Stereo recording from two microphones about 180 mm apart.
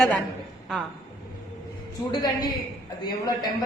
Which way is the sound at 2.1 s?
20° left (ahead or behind).